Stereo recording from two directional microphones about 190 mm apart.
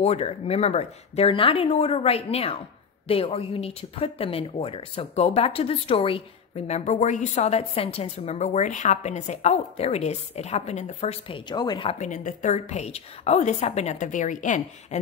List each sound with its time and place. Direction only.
0.0 s a woman's voice: 35° left (ahead or behind)